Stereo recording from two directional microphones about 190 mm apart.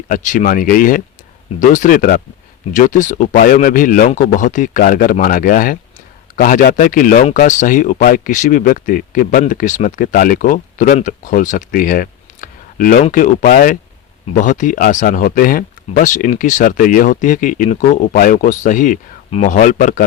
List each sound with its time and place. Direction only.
0.1 s speech: 45° left (ahead or behind)